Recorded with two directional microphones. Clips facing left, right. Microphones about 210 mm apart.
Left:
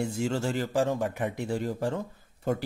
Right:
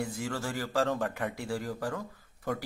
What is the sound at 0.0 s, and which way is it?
Speech, 25° left (ahead or behind).